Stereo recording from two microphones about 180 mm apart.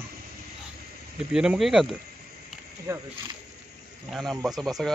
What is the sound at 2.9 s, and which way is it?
Speech, 15° right (ahead or behind).